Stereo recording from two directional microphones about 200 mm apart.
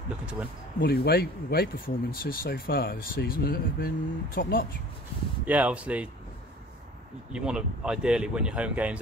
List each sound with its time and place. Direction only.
0.7 s speech: 50° left (ahead or behind)
5.4 s speech: 5° right (ahead or behind)
7.3 s speech: 5° right (ahead or behind)